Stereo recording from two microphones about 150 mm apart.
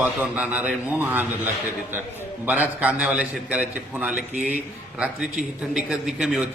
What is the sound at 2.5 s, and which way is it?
A man's voice, 10° right (ahead or behind).